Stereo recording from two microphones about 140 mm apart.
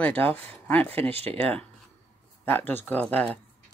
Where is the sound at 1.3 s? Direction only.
10° left (ahead or behind).